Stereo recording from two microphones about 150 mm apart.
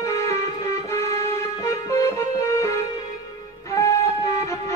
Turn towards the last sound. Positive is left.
turn(degrees=20)  # may be behind; listen again after turning